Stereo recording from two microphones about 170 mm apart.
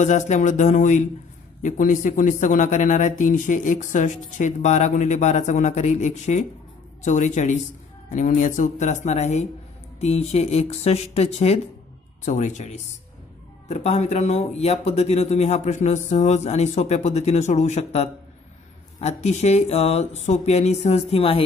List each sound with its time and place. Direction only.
0.0 s speech: 45° left (ahead or behind)